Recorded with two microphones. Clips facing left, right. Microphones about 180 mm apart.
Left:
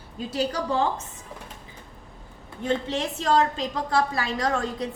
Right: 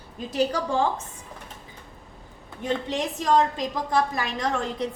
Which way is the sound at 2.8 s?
15° right (ahead or behind).